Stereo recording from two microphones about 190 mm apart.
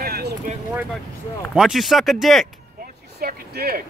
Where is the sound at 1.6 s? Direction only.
Centre (ahead or behind).